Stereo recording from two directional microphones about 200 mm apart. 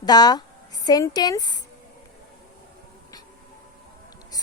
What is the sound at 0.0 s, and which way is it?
Speech, 20° left (ahead or behind).